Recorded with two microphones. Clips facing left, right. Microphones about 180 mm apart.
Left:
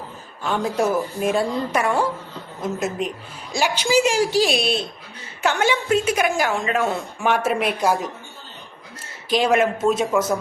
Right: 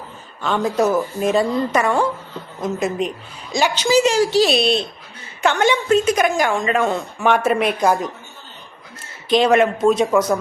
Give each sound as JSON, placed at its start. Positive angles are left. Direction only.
{"t": 0.4, "sound": "a woman's voice", "side_deg": 10}
{"t": 9.3, "sound": "a woman's voice", "side_deg": 5}